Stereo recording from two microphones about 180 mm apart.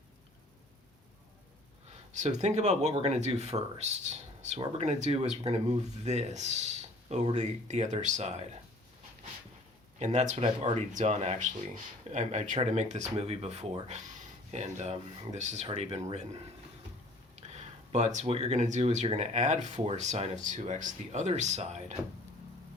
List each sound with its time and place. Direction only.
2.1 s speech: 40° right (ahead or behind)
10.0 s speech: 40° right (ahead or behind)
17.4 s speech: 40° right (ahead or behind)